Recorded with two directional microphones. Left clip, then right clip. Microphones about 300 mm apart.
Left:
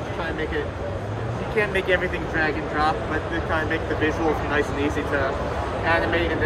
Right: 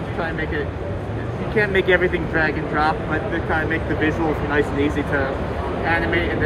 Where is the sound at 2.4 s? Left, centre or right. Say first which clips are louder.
Right 2 dB; centre.